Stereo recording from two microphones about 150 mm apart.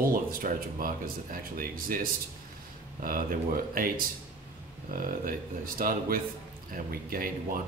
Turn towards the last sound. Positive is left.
turn(degrees=-70)  # may be behind; listen again after turning